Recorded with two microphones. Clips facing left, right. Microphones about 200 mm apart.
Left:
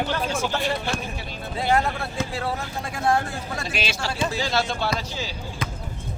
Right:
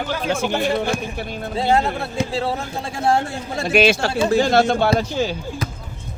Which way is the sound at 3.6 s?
55° right (ahead or behind).